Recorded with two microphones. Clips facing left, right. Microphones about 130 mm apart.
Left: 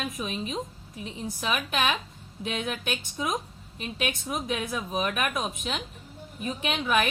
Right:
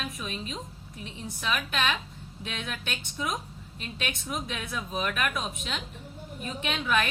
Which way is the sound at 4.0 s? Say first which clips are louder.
Left 3 dB; 20° left (ahead or behind).